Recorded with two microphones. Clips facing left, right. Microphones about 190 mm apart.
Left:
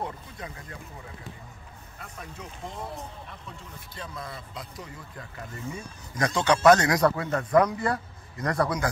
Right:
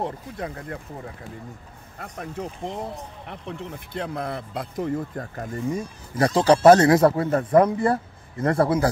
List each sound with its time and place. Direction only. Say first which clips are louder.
0.0 s speech: right 6 dB; 60° right (ahead or behind)
2.0 s speech: right 10 dB; 60° right (ahead or behind); by 8.8 s 30° right (ahead or behind)